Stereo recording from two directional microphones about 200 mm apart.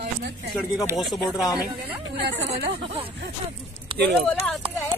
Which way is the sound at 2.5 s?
60° right (ahead or behind).